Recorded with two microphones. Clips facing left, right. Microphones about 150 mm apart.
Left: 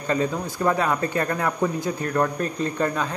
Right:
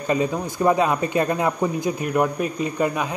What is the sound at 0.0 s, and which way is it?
A man's voice, 15° right (ahead or behind).